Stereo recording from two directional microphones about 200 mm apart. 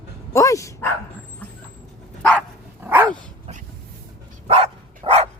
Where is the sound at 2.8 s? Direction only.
10° right (ahead or behind).